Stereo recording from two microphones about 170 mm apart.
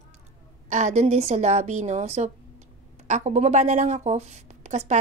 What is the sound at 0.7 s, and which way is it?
A woman's voice, 45° right (ahead or behind).